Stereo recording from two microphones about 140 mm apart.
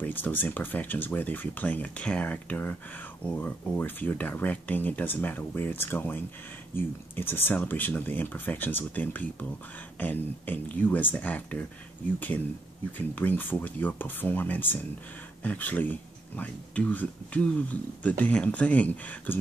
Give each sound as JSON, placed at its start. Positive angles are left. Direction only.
{"t": 0.0, "sound": "speech", "side_deg": 15}
{"t": 12.9, "sound": "speech", "side_deg": 10}